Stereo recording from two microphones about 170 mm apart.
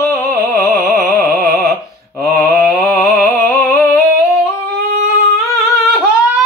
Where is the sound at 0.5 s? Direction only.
20° left (ahead or behind).